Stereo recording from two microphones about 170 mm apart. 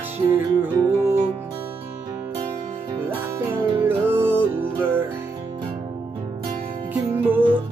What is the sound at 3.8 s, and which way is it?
Music, 15° right (ahead or behind).